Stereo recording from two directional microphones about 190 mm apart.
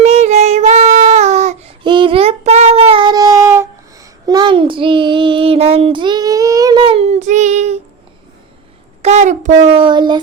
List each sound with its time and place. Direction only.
0.0 s child singing: 35° right (ahead or behind)
1.8 s child singing: 25° right (ahead or behind)
9.0 s a sound: 35° right (ahead or behind)